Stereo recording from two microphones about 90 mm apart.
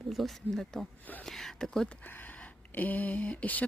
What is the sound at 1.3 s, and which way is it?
Speech, 5° left (ahead or behind).